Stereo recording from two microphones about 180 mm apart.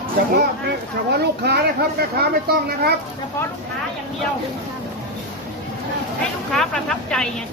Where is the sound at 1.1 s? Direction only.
65° right (ahead or behind).